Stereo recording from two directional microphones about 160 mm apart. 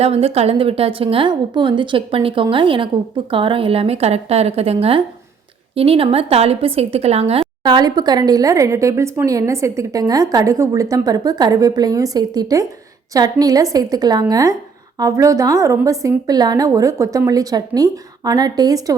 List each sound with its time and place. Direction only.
0.0 s a woman's voice: 40° right (ahead or behind)
7.6 s speech: 25° right (ahead or behind)